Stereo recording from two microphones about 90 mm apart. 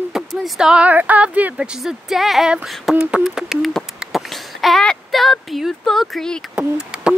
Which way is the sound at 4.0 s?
Centre (ahead or behind).